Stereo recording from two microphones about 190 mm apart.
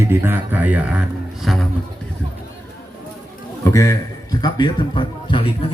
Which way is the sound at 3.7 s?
15° left (ahead or behind).